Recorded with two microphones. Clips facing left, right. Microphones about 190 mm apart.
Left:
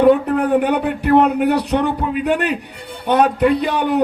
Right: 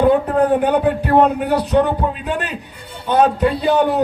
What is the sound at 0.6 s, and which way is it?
A man's voice, 65° left (ahead or behind).